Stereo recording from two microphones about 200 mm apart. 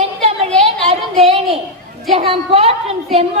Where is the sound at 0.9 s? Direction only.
30° right (ahead or behind).